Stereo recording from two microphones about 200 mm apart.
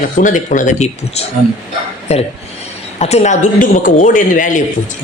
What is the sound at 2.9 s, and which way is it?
Speech, 35° left (ahead or behind).